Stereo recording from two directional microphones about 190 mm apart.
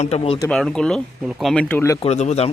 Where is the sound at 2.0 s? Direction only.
35° left (ahead or behind).